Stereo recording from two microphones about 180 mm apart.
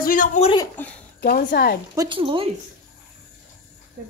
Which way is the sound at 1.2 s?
50° left (ahead or behind).